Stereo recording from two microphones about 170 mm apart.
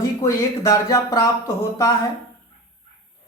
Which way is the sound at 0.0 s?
15° left (ahead or behind).